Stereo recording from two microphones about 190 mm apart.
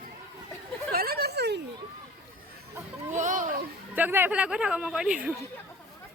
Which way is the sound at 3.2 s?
40° right (ahead or behind).